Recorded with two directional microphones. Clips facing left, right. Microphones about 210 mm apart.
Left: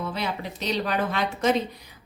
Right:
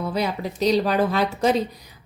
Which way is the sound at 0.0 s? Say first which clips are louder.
Right 5 dB; 40° right (ahead or behind).